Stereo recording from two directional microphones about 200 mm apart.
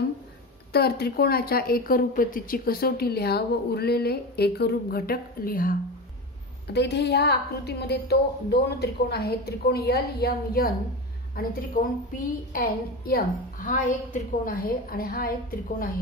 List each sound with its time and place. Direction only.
0.7 s a woman's voice: 50° left (ahead or behind)
6.7 s a woman's voice: 60° left (ahead or behind)